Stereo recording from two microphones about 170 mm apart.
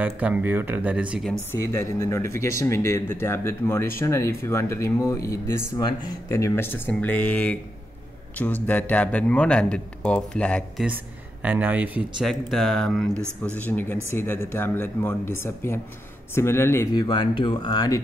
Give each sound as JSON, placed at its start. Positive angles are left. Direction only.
{"t": 0.0, "sound": "speech", "side_deg": -10}
{"t": 1.5, "sound": "speech", "side_deg": 15}
{"t": 8.6, "sound": "speech", "side_deg": 10}
{"t": 11.4, "sound": "speech", "side_deg": -10}
{"t": 16.9, "sound": "speech", "side_deg": 25}